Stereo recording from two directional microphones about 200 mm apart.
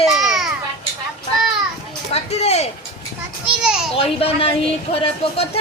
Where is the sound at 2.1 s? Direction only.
30° left (ahead or behind).